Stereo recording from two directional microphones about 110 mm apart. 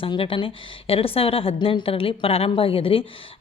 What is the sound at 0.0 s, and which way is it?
Speech, 55° left (ahead or behind).